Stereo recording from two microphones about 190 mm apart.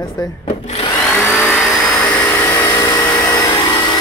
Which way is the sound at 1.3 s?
5° left (ahead or behind).